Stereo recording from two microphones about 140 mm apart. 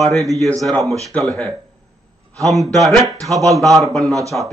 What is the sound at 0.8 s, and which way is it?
Speech, 25° right (ahead or behind).